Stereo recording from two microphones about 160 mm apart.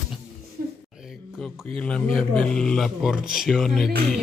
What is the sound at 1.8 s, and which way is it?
Speech, 5° left (ahead or behind).